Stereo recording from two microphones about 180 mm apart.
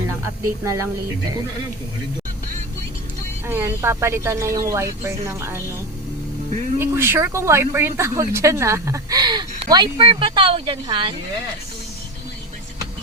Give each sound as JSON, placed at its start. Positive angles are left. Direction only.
{"t": 0.6, "sound": "speech", "side_deg": -15}
{"t": 3.4, "sound": "speech", "side_deg": -10}
{"t": 6.7, "sound": "speech", "side_deg": -15}